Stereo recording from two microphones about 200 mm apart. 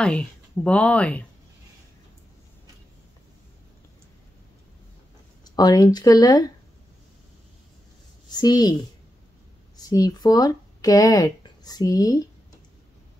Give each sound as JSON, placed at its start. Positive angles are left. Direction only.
{"t": 0.0, "sound": "speech", "side_deg": 5}
{"t": 5.4, "sound": "speech", "side_deg": 20}
{"t": 8.3, "sound": "a woman's voice", "side_deg": 20}
{"t": 9.8, "sound": "speech", "side_deg": 20}